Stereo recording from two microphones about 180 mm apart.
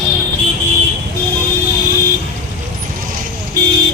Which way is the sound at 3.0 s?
50° right (ahead or behind).